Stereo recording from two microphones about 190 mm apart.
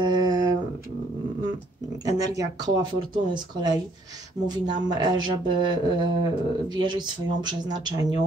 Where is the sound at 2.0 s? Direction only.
20° right (ahead or behind).